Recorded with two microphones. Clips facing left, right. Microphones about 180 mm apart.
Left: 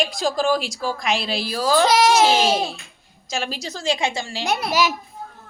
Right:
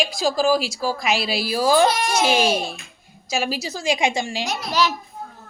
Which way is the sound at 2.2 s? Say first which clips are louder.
Left 1 dB; 15° right (ahead or behind).